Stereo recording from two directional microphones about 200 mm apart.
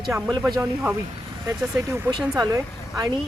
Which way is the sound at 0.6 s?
5° right (ahead or behind).